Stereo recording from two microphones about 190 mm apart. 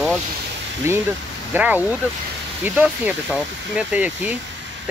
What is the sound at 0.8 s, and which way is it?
Speech, 15° right (ahead or behind).